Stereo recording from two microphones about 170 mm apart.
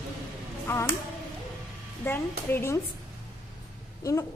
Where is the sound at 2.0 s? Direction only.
15° left (ahead or behind).